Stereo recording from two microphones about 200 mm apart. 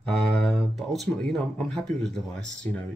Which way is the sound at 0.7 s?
Centre (ahead or behind).